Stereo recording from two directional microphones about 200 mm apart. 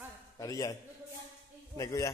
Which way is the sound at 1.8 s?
15° left (ahead or behind).